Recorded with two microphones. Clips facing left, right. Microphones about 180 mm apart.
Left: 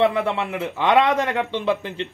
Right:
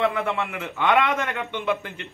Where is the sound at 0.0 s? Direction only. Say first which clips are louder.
Left 4 dB; 30° left (ahead or behind).